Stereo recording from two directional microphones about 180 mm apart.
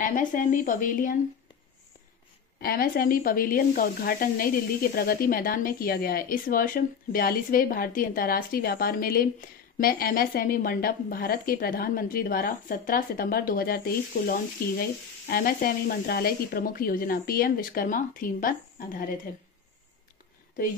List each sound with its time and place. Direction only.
0.0 s a woman's voice: 45° left (ahead or behind)
2.6 s a woman's voice: 55° left (ahead or behind)